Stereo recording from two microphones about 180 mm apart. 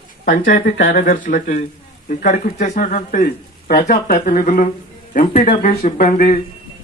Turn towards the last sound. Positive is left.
turn(degrees=45)  # may be behind; listen again after turning